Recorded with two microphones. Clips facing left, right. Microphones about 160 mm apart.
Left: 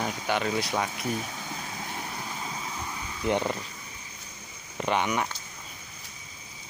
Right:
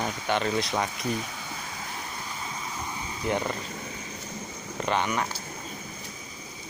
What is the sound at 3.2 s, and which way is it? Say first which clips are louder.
Speech: left 2 dB; 20° left (ahead or behind).